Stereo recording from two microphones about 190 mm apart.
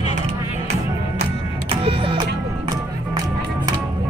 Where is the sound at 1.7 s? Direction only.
30° right (ahead or behind).